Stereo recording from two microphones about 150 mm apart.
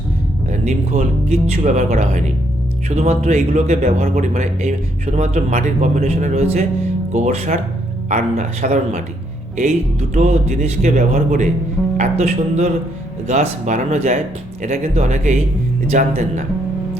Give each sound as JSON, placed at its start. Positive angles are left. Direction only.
{"t": 0.5, "sound": "speech", "side_deg": -50}
{"t": 10.2, "sound": "speech", "side_deg": -50}